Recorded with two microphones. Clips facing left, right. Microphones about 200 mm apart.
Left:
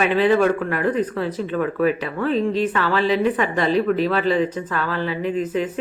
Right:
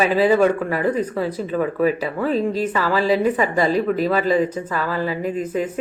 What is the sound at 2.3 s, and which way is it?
Speech, 40° right (ahead or behind).